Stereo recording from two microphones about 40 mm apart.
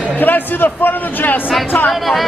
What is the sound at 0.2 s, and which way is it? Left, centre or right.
A man's voice, left.